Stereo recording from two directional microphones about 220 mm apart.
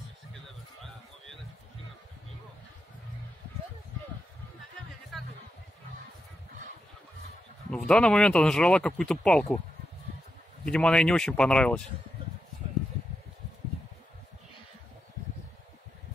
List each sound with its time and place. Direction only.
5.1 s a sound: centre (ahead or behind)
7.7 s speech: 5° left (ahead or behind)
10.6 s speech: 5° left (ahead or behind)